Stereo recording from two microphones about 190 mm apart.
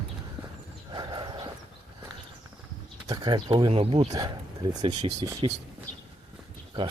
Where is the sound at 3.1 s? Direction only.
25° right (ahead or behind).